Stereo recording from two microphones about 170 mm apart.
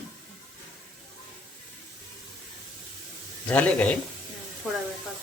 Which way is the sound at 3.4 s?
5° left (ahead or behind).